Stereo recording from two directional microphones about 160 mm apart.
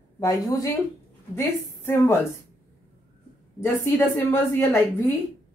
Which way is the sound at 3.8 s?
15° left (ahead or behind).